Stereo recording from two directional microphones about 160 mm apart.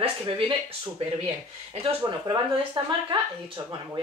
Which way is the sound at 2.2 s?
25° right (ahead or behind).